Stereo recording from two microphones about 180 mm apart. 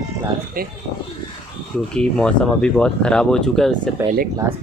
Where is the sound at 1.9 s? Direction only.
5° left (ahead or behind).